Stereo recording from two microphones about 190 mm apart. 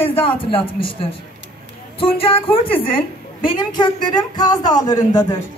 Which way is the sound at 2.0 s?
30° left (ahead or behind).